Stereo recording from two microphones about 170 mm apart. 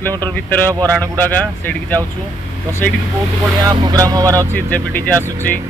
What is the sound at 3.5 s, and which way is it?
Speech, 25° right (ahead or behind).